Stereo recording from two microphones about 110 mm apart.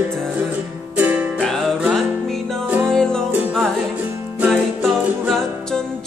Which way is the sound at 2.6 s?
15° right (ahead or behind).